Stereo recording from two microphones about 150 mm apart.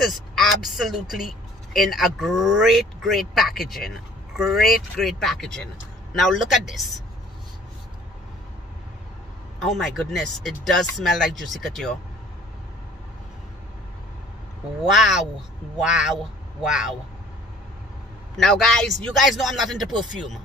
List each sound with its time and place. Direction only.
0.0 s a woman's voice: centre (ahead or behind)
9.6 s a woman's voice: centre (ahead or behind)
14.8 s a woman's voice: centre (ahead or behind)
18.3 s a woman's voice: centre (ahead or behind)